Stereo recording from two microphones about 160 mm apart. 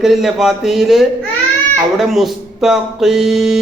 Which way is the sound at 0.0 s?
Centre (ahead or behind).